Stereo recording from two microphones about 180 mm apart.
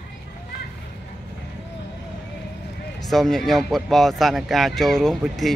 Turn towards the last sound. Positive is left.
turn(degrees=0)  # may be behind; listen again after turning